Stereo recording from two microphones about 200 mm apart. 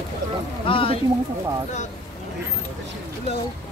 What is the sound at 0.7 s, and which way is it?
Speech, 25° left (ahead or behind).